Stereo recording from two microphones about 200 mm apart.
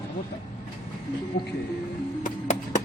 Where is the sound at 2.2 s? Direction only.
40° left (ahead or behind).